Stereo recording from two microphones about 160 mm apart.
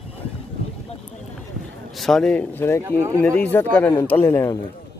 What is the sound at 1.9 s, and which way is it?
Speech, centre (ahead or behind).